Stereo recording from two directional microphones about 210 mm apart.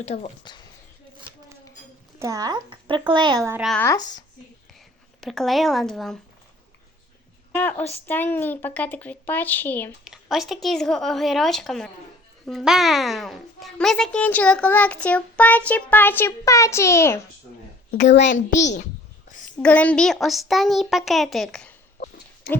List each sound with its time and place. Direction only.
0.0 s speech: 30° left (ahead or behind)
2.1 s a child's voice: 15° right (ahead or behind)
3.6 s a child's voice: centre (ahead or behind)
3.8 s speech: 15° left (ahead or behind)
5.2 s a child's voice: centre (ahead or behind)
7.5 s speech: 5° left (ahead or behind)
10.0 s a child's voice: centre (ahead or behind)
19.5 s a child's voice: 5° left (ahead or behind)